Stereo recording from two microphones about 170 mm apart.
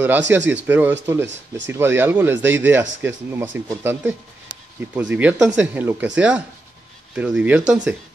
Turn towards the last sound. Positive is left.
turn(degrees=-10)  # may be behind; listen again after turning